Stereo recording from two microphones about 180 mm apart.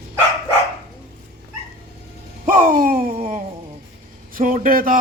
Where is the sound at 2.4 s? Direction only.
50° right (ahead or behind).